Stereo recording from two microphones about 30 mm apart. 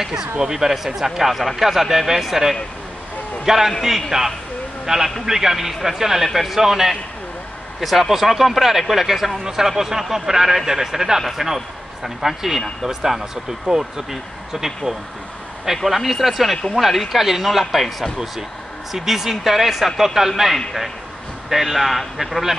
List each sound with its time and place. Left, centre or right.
0.0 s a man's voice: centre
15.9 s speech: centre
18.9 s speech: centre